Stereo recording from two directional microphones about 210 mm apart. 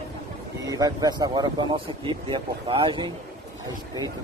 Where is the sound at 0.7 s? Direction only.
20° right (ahead or behind).